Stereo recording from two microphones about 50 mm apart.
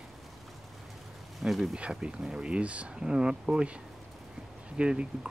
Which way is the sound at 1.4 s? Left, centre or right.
Centre.